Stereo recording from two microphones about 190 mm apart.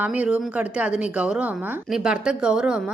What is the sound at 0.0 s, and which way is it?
Speech, 5° right (ahead or behind).